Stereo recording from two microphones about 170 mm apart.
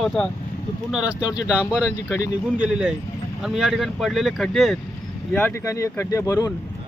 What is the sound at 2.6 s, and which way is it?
Speech, 5° right (ahead or behind).